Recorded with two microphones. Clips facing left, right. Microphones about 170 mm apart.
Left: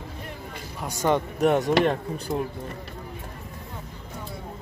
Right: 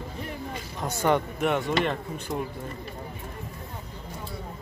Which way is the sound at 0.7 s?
15° left (ahead or behind).